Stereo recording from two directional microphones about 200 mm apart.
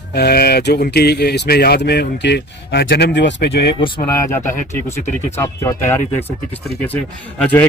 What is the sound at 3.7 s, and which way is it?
Speech, 25° left (ahead or behind).